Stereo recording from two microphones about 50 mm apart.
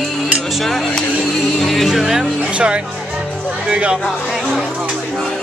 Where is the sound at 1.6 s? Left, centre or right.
Centre.